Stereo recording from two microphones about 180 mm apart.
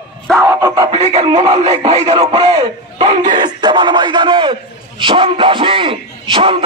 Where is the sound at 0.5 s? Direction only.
15° right (ahead or behind).